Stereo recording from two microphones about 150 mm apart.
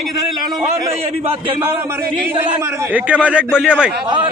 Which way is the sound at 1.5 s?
15° right (ahead or behind).